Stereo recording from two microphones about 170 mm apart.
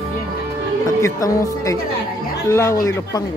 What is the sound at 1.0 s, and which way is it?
A man's voice, 20° left (ahead or behind).